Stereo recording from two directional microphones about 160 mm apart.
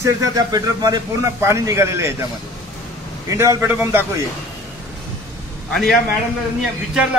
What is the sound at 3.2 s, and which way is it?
Speech, 15° right (ahead or behind).